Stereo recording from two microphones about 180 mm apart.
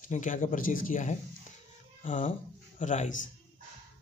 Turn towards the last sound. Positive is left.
turn(degrees=45)  # may be behind; listen again after turning